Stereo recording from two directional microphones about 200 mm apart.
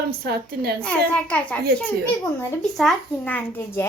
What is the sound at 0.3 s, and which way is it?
Speech, 50° right (ahead or behind).